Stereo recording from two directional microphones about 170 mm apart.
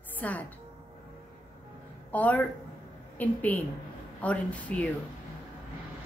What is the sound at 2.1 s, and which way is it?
A woman's voice, 10° left (ahead or behind).